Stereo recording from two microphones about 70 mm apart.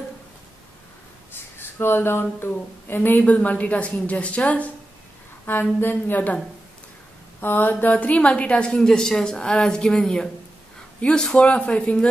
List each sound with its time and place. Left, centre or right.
1.3 s a sound: left
2.4 s a woman's voice: left
7.3 s mantra: left
7.8 s a woman's voice: left